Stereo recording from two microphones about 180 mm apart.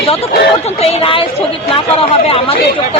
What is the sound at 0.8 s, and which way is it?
Speech, 30° left (ahead or behind).